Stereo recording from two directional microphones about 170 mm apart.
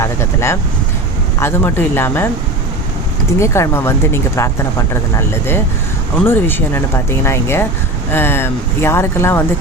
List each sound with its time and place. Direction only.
0.0 s speech: 15° left (ahead or behind)
3.3 s speech: 15° left (ahead or behind)
6.2 s speech: 15° left (ahead or behind)